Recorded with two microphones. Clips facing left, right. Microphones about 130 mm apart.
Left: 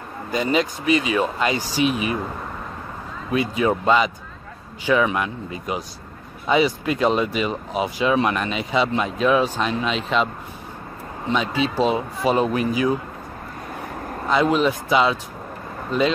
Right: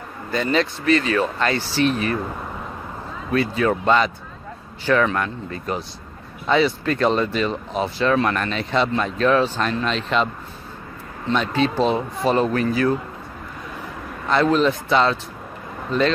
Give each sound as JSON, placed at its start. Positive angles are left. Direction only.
{"t": 0.3, "sound": "speech", "side_deg": 10}
{"t": 3.3, "sound": "speech", "side_deg": 15}
{"t": 14.3, "sound": "speech", "side_deg": 10}